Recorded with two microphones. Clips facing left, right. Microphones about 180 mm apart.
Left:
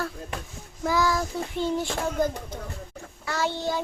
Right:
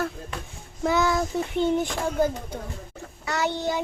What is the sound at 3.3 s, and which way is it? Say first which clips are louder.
Child singing: right 1 dB; 20° right (ahead or behind).